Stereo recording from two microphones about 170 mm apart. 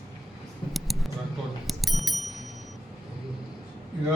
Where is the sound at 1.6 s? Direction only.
Centre (ahead or behind).